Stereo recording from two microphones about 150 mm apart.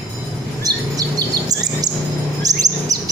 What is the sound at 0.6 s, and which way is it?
Chirp, 25° right (ahead or behind).